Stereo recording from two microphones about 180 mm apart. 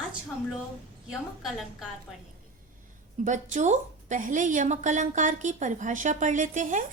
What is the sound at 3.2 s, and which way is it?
A woman's voice, 45° right (ahead or behind).